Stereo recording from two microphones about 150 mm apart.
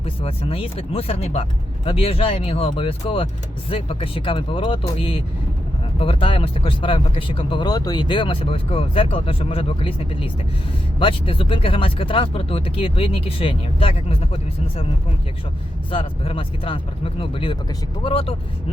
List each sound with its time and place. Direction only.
0.0 s speech: 40° left (ahead or behind)
15.9 s speech: 35° left (ahead or behind)